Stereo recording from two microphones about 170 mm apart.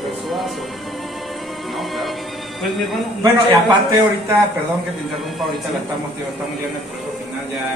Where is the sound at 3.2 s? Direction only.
25° right (ahead or behind).